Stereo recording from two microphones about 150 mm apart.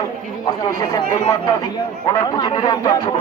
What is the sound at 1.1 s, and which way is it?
Speech, 55° left (ahead or behind).